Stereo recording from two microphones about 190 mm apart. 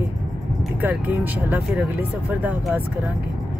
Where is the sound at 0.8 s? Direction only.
10° right (ahead or behind).